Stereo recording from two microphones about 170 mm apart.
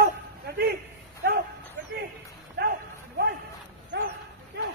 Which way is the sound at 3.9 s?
90° right.